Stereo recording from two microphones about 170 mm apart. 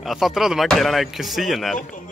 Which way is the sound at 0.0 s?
Centre (ahead or behind).